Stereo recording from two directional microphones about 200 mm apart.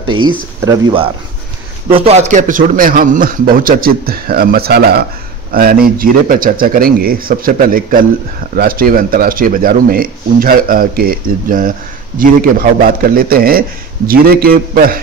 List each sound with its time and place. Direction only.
0.1 s a man's voice: 25° right (ahead or behind); by 15.0 s 45° right (ahead or behind)